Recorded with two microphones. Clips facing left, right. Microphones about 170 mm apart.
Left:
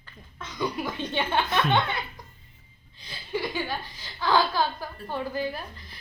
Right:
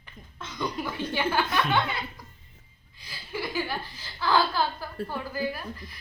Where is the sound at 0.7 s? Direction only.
15° left (ahead or behind).